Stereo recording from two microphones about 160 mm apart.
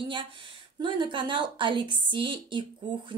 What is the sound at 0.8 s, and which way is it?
Speech, 30° right (ahead or behind).